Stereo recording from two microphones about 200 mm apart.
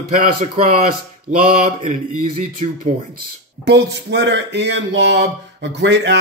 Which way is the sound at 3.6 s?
60° right (ahead or behind).